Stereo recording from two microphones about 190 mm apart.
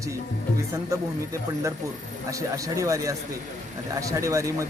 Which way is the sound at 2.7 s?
15° right (ahead or behind).